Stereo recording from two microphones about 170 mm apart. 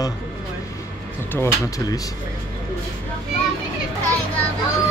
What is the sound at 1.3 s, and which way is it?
Speech, 15° left (ahead or behind).